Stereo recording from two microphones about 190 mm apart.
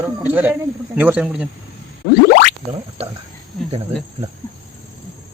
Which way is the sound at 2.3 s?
50° left (ahead or behind).